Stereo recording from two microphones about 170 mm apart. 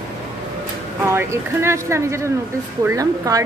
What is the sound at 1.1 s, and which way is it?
A woman's voice, 15° right (ahead or behind).